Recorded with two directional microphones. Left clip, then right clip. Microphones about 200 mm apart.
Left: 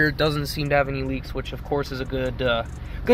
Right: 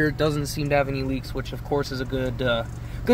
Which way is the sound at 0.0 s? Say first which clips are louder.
Left 2 dB; 10° right (ahead or behind).